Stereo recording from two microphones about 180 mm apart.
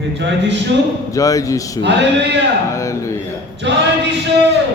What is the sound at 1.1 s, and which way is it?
Speech, 20° left (ahead or behind).